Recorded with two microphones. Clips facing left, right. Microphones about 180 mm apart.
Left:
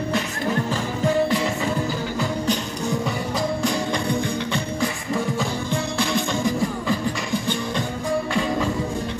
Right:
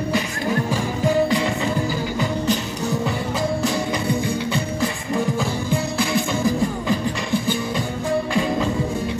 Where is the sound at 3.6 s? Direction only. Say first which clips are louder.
Right 1 dB; 5° right (ahead or behind).